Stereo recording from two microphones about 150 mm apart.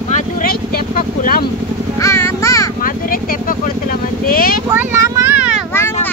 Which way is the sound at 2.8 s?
70° left (ahead or behind).